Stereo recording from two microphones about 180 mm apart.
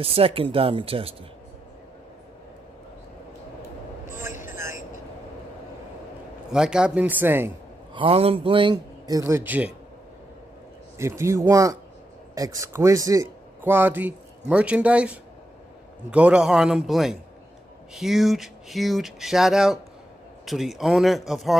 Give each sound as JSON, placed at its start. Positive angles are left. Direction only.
{"t": 0.0, "sound": "speech", "side_deg": -30}
{"t": 6.5, "sound": "speech", "side_deg": -5}
{"t": 7.9, "sound": "a man's voice", "side_deg": -30}
{"t": 11.0, "sound": "speech", "side_deg": -15}